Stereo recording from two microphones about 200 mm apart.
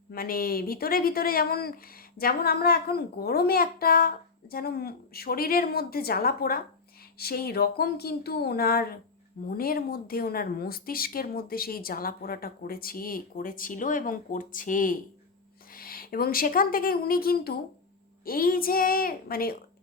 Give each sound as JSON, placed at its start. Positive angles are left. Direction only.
{"t": 0.1, "sound": "speech", "side_deg": 45}